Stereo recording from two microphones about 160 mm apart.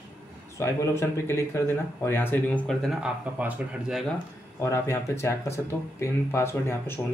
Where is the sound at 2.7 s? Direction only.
Centre (ahead or behind).